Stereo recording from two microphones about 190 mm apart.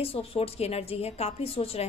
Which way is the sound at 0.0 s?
30° left (ahead or behind).